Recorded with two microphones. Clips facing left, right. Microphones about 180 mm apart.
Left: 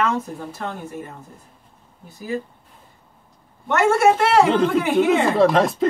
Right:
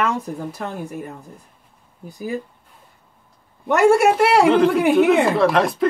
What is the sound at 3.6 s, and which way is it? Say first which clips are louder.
Speech: right 2 dB; 15° right (ahead or behind).